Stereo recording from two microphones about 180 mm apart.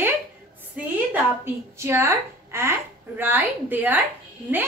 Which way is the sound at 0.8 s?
10° right (ahead or behind).